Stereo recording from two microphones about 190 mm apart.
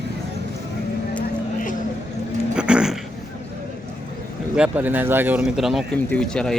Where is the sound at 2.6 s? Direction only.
5° right (ahead or behind).